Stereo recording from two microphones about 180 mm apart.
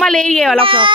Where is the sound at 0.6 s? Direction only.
30° right (ahead or behind).